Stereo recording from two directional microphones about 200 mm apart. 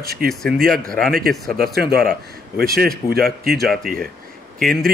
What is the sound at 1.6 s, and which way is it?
Speech, 50° right (ahead or behind).